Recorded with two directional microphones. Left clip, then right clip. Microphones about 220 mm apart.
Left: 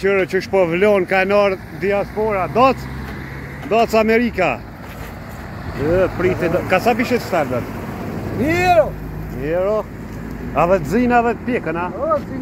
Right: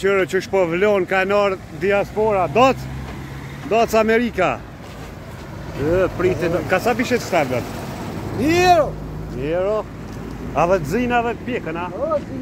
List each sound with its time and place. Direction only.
0.0 s speech: centre (ahead or behind)
1.9 s speech: 20° right (ahead or behind)
3.7 s speech: 10° right (ahead or behind)
5.9 s speech: centre (ahead or behind)
8.5 s speech: 55° right (ahead or behind)
9.4 s speech: 5° right (ahead or behind); by 11.9 s 10° left (ahead or behind)